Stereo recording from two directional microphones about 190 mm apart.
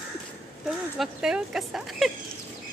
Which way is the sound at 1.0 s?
5° right (ahead or behind).